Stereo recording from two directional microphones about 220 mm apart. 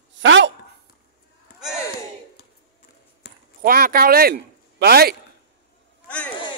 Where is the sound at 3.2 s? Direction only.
50° left (ahead or behind).